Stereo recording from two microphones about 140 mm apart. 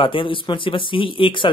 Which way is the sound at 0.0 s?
35° left (ahead or behind).